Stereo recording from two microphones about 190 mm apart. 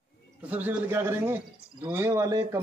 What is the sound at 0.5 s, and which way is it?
Speech, 10° right (ahead or behind).